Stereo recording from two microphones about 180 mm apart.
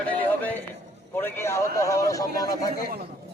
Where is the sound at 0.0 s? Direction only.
10° left (ahead or behind).